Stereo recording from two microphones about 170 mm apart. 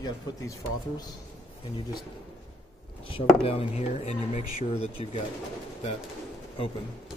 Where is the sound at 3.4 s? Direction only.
35° left (ahead or behind).